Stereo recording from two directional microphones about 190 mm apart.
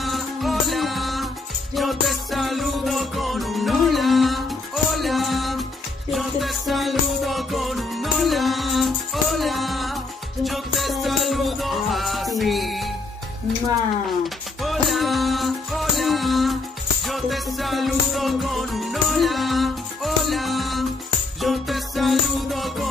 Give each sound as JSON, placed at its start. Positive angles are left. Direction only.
{"t": 0.0, "sound": "music", "side_deg": 0}
{"t": 14.2, "sound": "music", "side_deg": 0}